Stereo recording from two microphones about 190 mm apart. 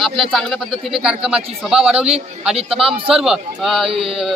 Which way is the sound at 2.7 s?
30° right (ahead or behind).